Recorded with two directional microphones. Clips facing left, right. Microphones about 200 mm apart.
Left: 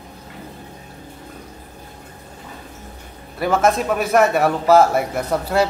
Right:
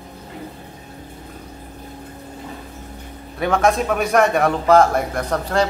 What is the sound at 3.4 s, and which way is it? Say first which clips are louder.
A man's voice: even; centre (ahead or behind).